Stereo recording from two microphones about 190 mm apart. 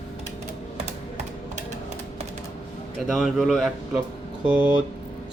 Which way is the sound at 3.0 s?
Centre (ahead or behind).